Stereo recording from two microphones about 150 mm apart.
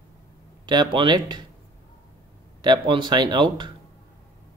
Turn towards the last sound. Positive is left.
turn(degrees=-30)  # may be behind; listen again after turning